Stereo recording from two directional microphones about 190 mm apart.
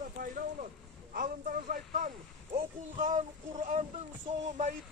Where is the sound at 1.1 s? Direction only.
45° right (ahead or behind).